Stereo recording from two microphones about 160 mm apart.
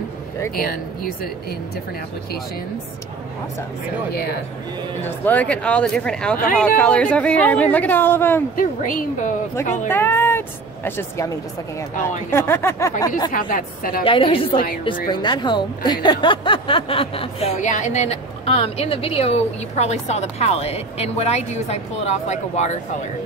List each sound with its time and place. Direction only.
0.6 s speech: 70° left (ahead or behind)
5.0 s speech: 10° left (ahead or behind)
8.5 s a woman's voice: 55° left (ahead or behind)
9.8 s speech: 15° left (ahead or behind)
13.3 s a woman's voice: 60° left (ahead or behind)
14.0 s speech: 35° left (ahead or behind)
17.6 s a woman's voice: 50° left (ahead or behind)